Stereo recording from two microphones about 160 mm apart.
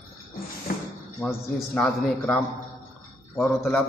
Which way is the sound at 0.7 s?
60° left (ahead or behind).